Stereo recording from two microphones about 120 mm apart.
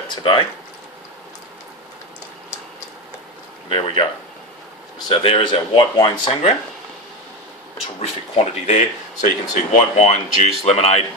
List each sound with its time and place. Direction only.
0.1 s speech: 40° left (ahead or behind)
3.6 s speech: 50° left (ahead or behind)
5.1 s speech: 50° left (ahead or behind)
7.7 s speech: 60° left (ahead or behind)